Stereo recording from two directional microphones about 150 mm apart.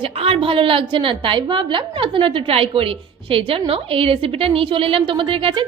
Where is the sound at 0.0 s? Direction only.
40° right (ahead or behind).